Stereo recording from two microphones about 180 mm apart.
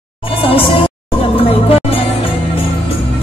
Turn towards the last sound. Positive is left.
turn(degrees=30)  # may be behind; listen again after turning